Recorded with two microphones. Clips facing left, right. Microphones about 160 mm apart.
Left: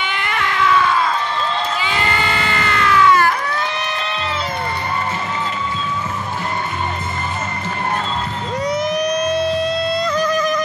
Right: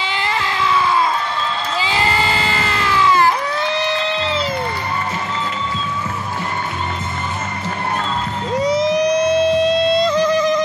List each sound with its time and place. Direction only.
0.0 s a sound: 30° right (ahead or behind)
1.9 s crowd: 30° right (ahead or behind)
4.0 s music: 30° right (ahead or behind)
8.7 s emergency vehicle: 90° right
9.9 s music: 30° right (ahead or behind)